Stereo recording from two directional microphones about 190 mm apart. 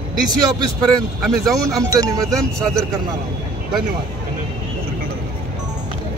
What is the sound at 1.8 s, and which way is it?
Speech, 20° right (ahead or behind).